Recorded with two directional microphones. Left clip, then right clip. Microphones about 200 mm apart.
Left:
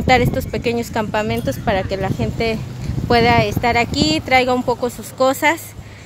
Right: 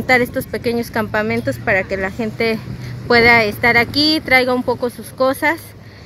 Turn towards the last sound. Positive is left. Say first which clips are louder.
# left 1 dB
turn(degrees=0)  # may be behind; listen again after turning